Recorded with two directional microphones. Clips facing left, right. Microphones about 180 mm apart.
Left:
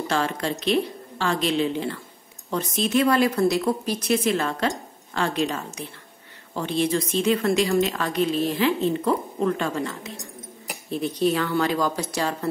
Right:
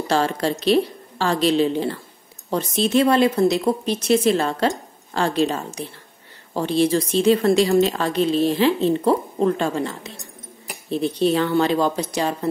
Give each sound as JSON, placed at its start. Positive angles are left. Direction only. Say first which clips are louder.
{"t": 0.1, "sound": "a woman's voice", "louder": "right 6 dB", "side_deg": -35}